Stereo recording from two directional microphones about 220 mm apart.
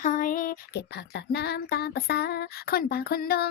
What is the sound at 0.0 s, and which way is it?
Female singing, 35° left (ahead or behind).